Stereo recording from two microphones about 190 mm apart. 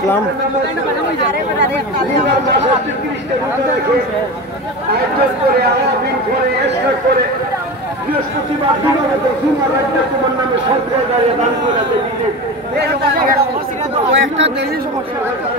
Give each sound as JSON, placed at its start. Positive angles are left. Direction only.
{"t": 14.1, "sound": "speech", "side_deg": -75}